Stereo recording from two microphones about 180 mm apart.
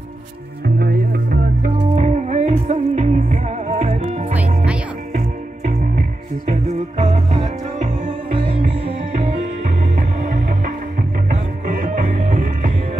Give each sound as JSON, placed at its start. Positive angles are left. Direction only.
{"t": 0.7, "sound": "music", "side_deg": -60}
{"t": 5.7, "sound": "music", "side_deg": -40}
{"t": 8.4, "sound": "music", "side_deg": -30}
{"t": 11.2, "sound": "music", "side_deg": -50}
{"t": 12.0, "sound": "music", "side_deg": -40}